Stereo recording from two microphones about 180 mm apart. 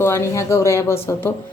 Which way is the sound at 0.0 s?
15° left (ahead or behind).